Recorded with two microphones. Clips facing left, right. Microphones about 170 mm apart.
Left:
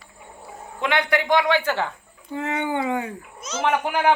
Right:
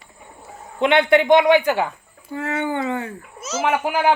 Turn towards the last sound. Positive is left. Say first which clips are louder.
# right 2 dB
turn(degrees=-5)  # may be behind; listen again after turning